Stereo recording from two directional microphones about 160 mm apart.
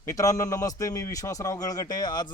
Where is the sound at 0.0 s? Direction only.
20° left (ahead or behind).